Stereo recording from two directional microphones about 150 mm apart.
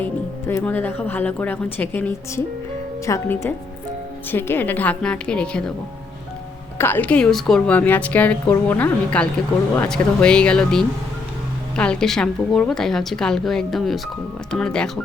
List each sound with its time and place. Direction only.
0.0 s a woman's voice: 15° left (ahead or behind)
6.7 s a woman's voice: 15° left (ahead or behind)